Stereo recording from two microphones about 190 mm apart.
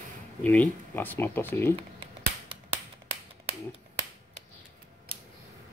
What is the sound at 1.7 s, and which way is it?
Finger snapping, 30° right (ahead or behind).